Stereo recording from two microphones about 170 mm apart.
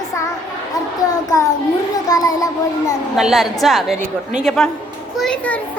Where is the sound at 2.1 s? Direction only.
20° left (ahead or behind).